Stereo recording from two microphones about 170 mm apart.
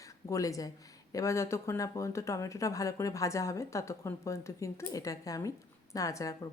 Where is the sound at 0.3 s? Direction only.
20° left (ahead or behind).